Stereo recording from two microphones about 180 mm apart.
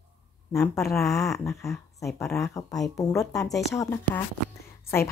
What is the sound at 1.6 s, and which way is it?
Speech, 15° left (ahead or behind).